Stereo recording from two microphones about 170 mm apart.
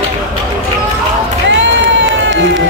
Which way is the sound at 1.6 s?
90° right.